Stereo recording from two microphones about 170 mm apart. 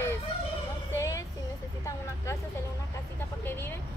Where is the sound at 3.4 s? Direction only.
10° left (ahead or behind).